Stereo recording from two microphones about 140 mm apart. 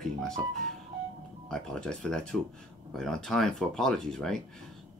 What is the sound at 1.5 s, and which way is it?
Speech, 5° left (ahead or behind).